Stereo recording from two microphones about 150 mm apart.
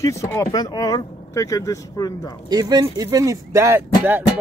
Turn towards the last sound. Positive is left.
turn(degrees=-15)  # may be behind; listen again after turning